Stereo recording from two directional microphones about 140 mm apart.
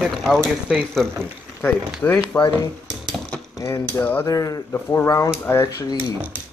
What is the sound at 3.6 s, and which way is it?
Speech, 15° left (ahead or behind).